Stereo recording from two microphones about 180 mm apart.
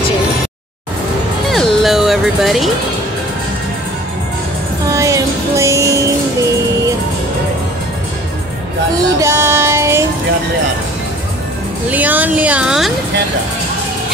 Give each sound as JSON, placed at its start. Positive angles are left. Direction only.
{"t": 1.5, "sound": "music", "side_deg": 0}
{"t": 4.9, "sound": "music", "side_deg": -15}
{"t": 9.2, "sound": "child singing", "side_deg": -15}
{"t": 11.9, "sound": "a sound", "side_deg": -10}